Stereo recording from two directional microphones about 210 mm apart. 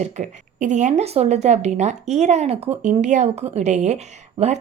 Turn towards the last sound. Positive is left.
turn(degrees=-30)  # may be behind; listen again after turning